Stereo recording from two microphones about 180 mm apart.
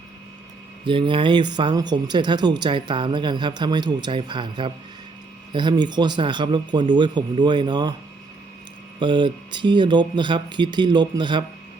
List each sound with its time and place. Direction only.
0.9 s speech: 30° right (ahead or behind)
9.0 s speech: 25° right (ahead or behind)